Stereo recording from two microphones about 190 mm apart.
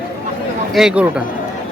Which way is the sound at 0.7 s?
5° right (ahead or behind).